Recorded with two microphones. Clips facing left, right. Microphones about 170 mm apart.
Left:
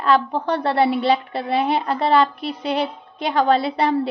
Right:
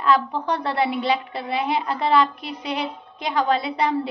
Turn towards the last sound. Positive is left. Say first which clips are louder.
# left 4 dB
turn(degrees=30)  # may be behind; listen again after turning